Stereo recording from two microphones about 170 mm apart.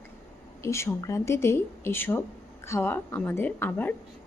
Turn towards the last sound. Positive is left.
turn(degrees=10)  # may be behind; listen again after turning